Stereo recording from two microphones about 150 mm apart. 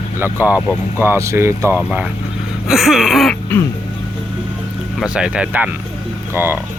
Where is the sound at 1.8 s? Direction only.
5° right (ahead or behind).